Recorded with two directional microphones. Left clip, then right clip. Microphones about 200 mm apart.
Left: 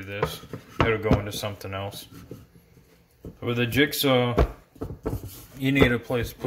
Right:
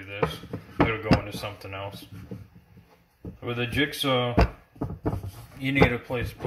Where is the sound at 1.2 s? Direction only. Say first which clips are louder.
Left 3 dB; 55° left (ahead or behind).